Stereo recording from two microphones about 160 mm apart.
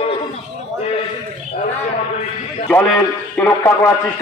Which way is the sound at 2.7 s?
5° left (ahead or behind).